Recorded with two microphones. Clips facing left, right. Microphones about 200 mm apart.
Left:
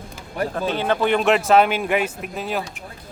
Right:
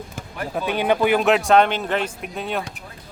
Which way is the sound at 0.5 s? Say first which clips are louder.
Right 3 dB; 15° right (ahead or behind).